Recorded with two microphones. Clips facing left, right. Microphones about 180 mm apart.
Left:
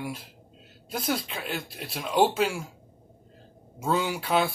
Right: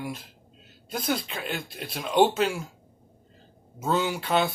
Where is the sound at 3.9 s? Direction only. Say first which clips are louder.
Right 1 dB; 5° left (ahead or behind).